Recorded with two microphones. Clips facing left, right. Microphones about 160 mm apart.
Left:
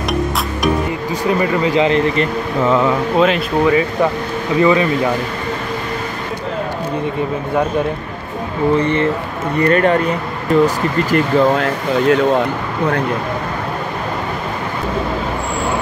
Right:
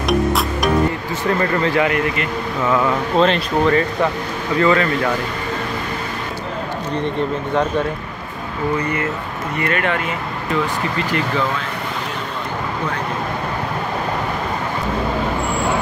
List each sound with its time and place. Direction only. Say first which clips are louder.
1.2 s speech: left 2 dB; 15° left (ahead or behind)
1.9 s speech: left 5 dB; 25° left (ahead or behind)
3.2 s speech: even; 5° left (ahead or behind)
8.7 s speech: left 6 dB; 30° left (ahead or behind); by 11.6 s 45° left (ahead or behind)
11.6 s speech: left 11 dB; 75° left (ahead or behind)